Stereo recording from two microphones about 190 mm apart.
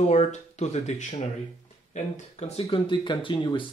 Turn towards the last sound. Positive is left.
turn(degrees=25)  # may be behind; listen again after turning